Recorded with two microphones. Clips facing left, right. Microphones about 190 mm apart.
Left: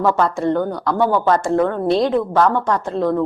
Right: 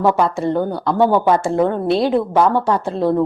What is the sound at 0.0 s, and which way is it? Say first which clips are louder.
Speech: right 1 dB; 15° right (ahead or behind).